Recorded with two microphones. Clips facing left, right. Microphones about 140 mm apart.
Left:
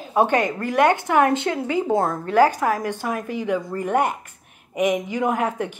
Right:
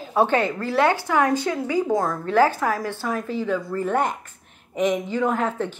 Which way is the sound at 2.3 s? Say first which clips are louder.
Left 1 dB; 15° left (ahead or behind).